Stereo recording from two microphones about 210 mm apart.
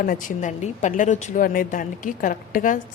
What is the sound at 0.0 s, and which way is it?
A woman's voice, 40° left (ahead or behind).